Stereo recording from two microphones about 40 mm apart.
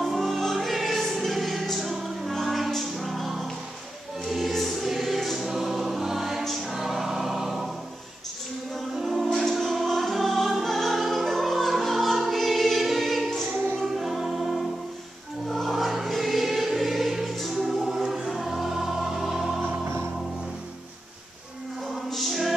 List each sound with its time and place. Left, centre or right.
0.0 s music: centre
4.2 s choir: centre
6.4 s music: centre
8.7 s music: centre
15.4 s choir: centre
19.6 s music: right
21.8 s music: centre